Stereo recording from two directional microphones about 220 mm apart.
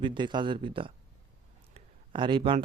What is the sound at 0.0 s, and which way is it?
A man's voice, 20° right (ahead or behind).